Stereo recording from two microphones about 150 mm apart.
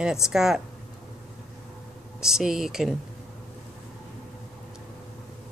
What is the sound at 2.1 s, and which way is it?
Speech, 5° right (ahead or behind).